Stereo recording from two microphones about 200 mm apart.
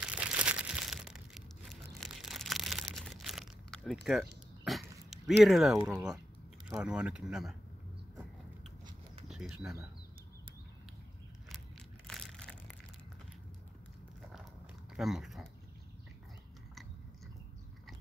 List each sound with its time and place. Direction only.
0.0 s crushing: 5° right (ahead or behind)
4.6 s dog: centre (ahead or behind)
5.4 s speech: centre (ahead or behind)
9.3 s speech: 5° right (ahead or behind)
12.1 s crushing: centre (ahead or behind)
15.0 s speech: centre (ahead or behind)